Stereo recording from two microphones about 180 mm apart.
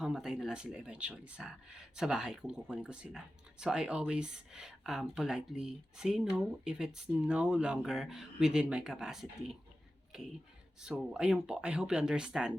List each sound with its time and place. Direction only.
0.0 s speech: 5° right (ahead or behind)
10.1 s a sound: centre (ahead or behind)
10.8 s speech: centre (ahead or behind)